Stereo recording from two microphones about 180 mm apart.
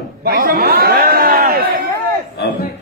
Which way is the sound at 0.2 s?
55° right (ahead or behind).